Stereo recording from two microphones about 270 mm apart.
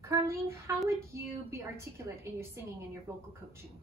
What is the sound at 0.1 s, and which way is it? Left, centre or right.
A woman's voice, centre.